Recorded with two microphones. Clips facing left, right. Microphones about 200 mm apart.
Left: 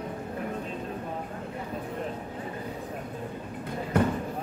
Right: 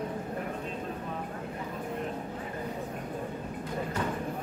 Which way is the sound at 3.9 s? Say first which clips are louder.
Left 10 dB; 60° left (ahead or behind).